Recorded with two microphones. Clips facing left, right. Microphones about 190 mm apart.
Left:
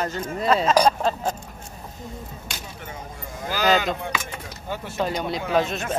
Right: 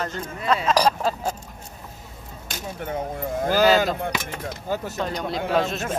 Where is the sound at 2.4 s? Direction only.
55° right (ahead or behind).